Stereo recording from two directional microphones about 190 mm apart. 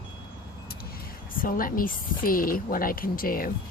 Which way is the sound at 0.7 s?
50° left (ahead or behind).